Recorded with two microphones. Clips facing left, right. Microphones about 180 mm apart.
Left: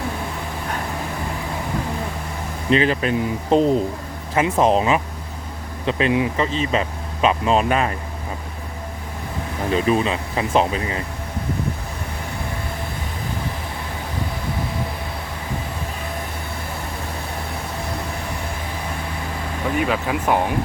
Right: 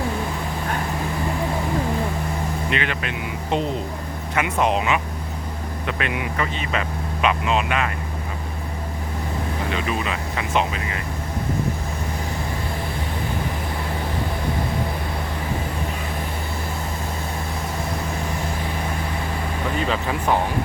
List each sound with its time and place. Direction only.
2.6 s speech: 35° left (ahead or behind)
9.7 s speech: 30° left (ahead or behind)
19.8 s speech: 10° left (ahead or behind)